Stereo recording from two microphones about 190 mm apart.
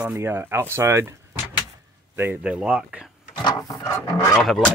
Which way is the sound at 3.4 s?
15° left (ahead or behind).